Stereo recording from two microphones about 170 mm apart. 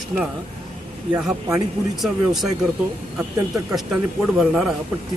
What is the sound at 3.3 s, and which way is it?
Speech, 20° right (ahead or behind).